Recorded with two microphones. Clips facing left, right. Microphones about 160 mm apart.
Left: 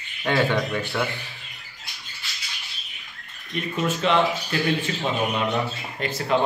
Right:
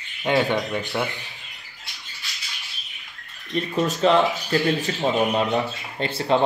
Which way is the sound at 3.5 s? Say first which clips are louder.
Right 3 dB; 35° right (ahead or behind).